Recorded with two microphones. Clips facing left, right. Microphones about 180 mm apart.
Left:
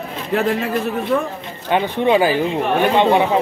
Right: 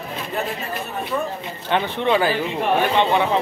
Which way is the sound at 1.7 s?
15° left (ahead or behind).